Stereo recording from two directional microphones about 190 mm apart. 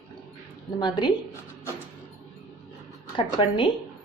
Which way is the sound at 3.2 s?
25° left (ahead or behind).